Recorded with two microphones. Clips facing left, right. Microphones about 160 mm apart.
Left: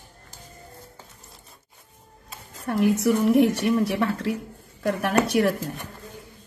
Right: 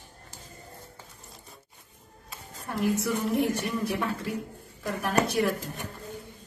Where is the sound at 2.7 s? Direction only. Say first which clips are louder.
Left 7 dB; 70° left (ahead or behind).